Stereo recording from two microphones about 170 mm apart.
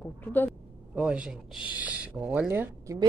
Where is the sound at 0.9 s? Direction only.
5° right (ahead or behind).